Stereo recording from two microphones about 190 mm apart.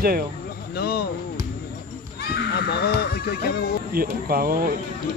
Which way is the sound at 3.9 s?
50° right (ahead or behind).